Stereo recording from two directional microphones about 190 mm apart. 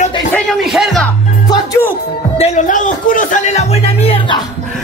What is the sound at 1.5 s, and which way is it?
Music, 15° left (ahead or behind).